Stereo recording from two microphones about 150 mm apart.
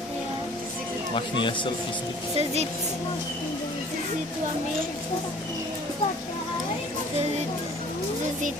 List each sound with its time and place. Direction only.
1.1 s a man's voice: 35° left (ahead or behind)
2.3 s speech: 45° right (ahead or behind)